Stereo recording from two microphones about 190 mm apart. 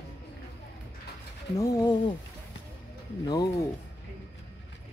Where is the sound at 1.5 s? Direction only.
20° left (ahead or behind).